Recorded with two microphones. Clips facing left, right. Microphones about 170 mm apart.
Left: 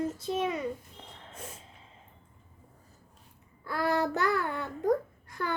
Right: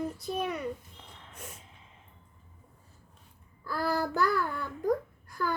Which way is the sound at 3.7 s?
75° left (ahead or behind).